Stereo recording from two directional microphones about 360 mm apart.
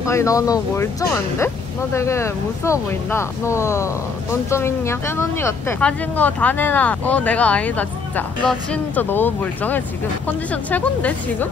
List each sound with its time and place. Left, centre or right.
0.0 s speech: centre
2.0 s speech: centre